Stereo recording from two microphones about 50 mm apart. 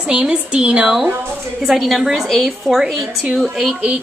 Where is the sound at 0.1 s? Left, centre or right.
Centre.